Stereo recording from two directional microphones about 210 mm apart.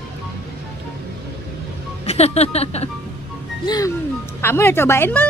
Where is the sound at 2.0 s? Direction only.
30° left (ahead or behind).